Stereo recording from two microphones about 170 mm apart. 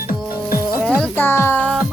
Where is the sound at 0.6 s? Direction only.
20° left (ahead or behind).